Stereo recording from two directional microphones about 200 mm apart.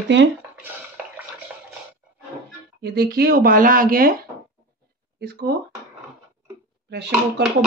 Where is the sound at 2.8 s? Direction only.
50° right (ahead or behind).